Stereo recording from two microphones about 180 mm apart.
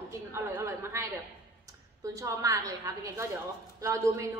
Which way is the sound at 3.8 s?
15° right (ahead or behind).